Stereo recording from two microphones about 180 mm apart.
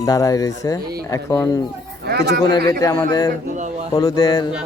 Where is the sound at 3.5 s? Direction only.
40° right (ahead or behind).